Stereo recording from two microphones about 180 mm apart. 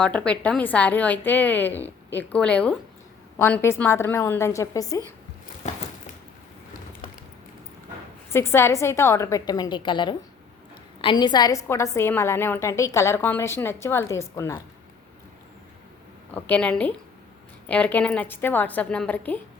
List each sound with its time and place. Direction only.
0.0 s a woman's voice: 5° left (ahead or behind)
8.3 s a woman's voice: 15° left (ahead or behind)
16.3 s a woman's voice: 5° left (ahead or behind)